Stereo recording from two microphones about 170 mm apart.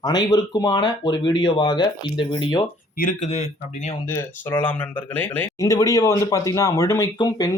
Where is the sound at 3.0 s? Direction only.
50° left (ahead or behind).